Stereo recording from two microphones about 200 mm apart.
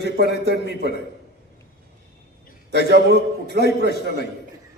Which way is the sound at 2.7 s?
55° right (ahead or behind).